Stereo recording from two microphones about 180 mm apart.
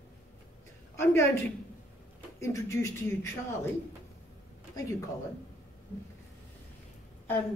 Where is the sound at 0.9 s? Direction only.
15° left (ahead or behind).